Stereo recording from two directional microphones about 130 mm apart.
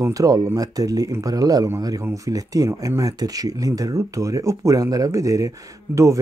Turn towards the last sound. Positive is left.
turn(degrees=-25)  # may be behind; listen again after turning